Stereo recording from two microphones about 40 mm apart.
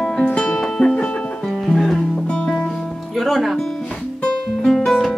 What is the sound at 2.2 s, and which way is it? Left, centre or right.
Music, left.